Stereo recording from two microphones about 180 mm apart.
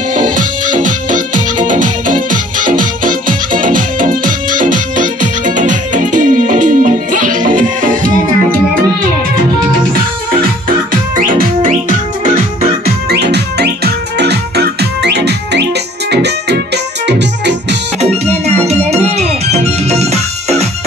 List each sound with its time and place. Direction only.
0.1 s music: 45° right (ahead or behind)
10.9 s music: 50° right (ahead or behind)
12.8 s music: 65° right (ahead or behind)
18.2 s music: 35° right (ahead or behind)